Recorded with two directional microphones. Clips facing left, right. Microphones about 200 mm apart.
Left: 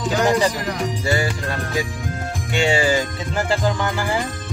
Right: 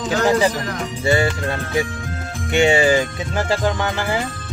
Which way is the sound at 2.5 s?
20° right (ahead or behind).